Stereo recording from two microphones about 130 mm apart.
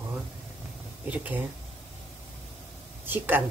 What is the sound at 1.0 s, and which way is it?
Speech, 10° right (ahead or behind).